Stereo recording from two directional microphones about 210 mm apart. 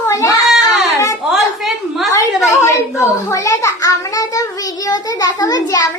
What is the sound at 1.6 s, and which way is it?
Speech, centre (ahead or behind).